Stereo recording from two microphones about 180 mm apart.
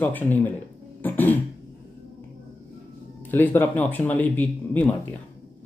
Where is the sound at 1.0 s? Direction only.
10° left (ahead or behind).